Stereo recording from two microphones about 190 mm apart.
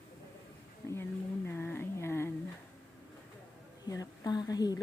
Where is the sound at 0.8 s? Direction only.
15° left (ahead or behind).